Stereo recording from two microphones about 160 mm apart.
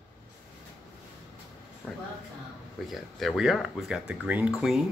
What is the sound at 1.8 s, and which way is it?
Speech, 10° left (ahead or behind).